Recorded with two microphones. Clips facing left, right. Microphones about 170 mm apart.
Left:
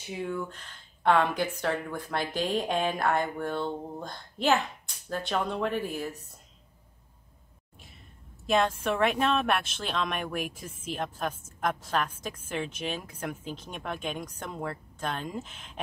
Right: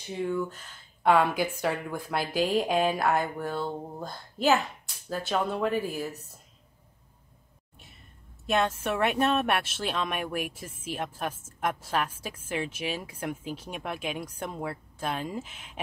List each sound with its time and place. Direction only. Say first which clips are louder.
0.1 s speech: right 3 dB; centre (ahead or behind)
8.5 s speech: left 1 dB; centre (ahead or behind)